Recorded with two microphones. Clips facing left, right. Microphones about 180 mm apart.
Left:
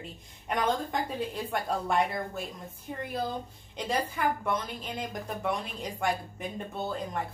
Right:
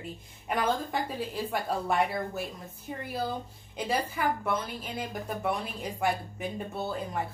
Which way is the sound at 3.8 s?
5° right (ahead or behind).